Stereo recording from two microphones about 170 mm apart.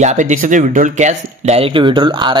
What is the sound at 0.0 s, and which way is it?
Speech, 45° right (ahead or behind).